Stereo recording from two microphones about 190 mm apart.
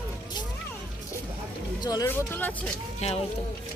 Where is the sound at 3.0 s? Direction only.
30° left (ahead or behind).